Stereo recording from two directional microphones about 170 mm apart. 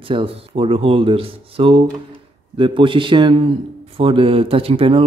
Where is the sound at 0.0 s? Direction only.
30° right (ahead or behind).